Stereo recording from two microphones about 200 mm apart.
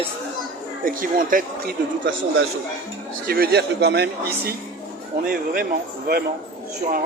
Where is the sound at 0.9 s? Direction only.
45° right (ahead or behind).